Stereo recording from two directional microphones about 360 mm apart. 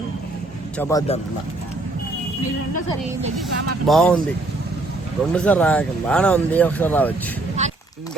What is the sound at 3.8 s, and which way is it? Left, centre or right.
Speech, centre.